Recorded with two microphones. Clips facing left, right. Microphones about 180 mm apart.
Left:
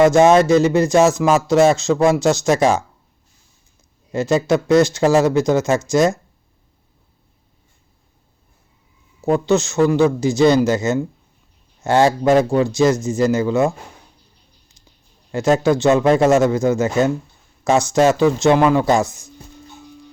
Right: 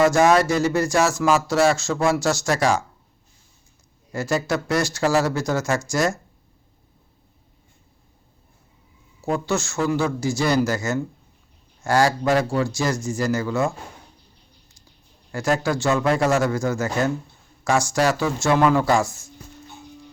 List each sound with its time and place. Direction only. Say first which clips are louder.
0.0 s speech: left 5 dB; 20° left (ahead or behind)
4.1 s speech: left 7 dB; 20° left (ahead or behind)
9.2 s speech: left 7 dB; 20° left (ahead or behind)
15.3 s speech: left 7 dB; 20° left (ahead or behind)